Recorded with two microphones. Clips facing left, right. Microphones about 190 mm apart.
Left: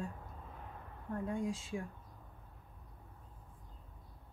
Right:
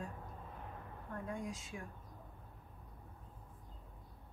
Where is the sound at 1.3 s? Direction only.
30° left (ahead or behind).